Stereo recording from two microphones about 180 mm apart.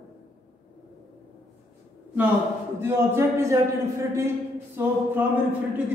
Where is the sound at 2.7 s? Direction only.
15° right (ahead or behind).